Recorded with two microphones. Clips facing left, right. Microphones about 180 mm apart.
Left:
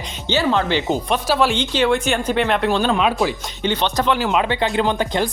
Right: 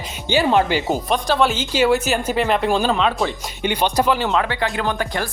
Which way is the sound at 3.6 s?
10° right (ahead or behind).